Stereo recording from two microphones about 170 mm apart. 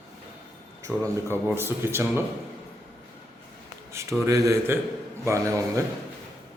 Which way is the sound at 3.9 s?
15° right (ahead or behind).